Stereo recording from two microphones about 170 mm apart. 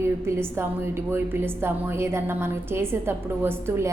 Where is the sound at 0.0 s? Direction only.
15° right (ahead or behind).